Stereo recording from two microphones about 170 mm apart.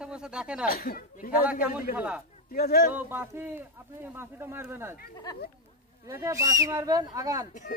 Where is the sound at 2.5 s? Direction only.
60° left (ahead or behind).